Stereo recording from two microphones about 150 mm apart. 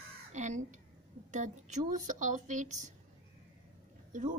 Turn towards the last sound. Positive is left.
turn(degrees=-60)  # may be behind; listen again after turning